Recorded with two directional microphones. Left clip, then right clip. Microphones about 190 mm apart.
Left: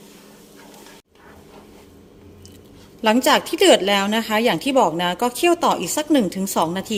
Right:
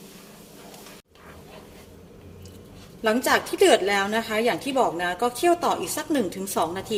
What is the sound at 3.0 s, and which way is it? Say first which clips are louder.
A woman's voice: left 5 dB; 50° left (ahead or behind).